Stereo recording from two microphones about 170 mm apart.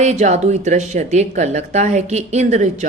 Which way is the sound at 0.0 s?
40° right (ahead or behind).